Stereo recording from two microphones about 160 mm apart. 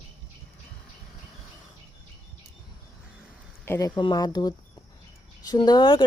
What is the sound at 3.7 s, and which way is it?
Speech, 20° left (ahead or behind).